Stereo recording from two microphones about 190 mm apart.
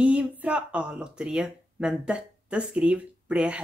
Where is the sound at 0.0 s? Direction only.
5° right (ahead or behind).